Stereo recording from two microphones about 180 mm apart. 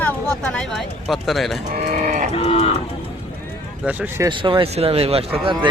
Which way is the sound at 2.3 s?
35° left (ahead or behind).